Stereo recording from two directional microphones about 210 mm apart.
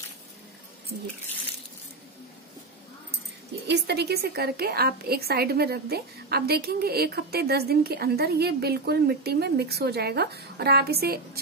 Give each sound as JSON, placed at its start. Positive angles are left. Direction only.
{"t": 3.6, "sound": "a woman's voice", "side_deg": -50}